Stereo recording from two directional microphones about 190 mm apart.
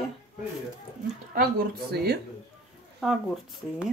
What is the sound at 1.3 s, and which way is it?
Speech, 55° right (ahead or behind).